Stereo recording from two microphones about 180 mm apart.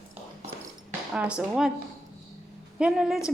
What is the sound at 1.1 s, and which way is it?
Speech, 5° right (ahead or behind).